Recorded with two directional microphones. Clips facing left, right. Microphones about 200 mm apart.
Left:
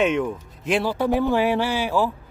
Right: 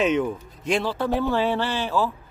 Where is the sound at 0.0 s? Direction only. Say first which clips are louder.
Even; centre (ahead or behind).